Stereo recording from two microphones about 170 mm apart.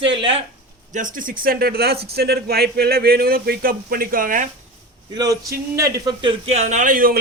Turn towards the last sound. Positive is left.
turn(degrees=-55)  # may be behind; listen again after turning